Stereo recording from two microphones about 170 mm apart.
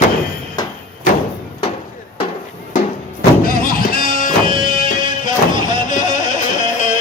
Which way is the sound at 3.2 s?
60° left (ahead or behind).